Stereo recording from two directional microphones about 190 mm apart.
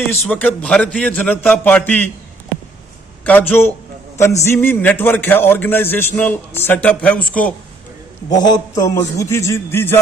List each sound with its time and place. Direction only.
0.1 s a man's voice: 5° left (ahead or behind)
3.3 s a man's voice: 10° left (ahead or behind)
8.4 s a man's voice: 20° left (ahead or behind)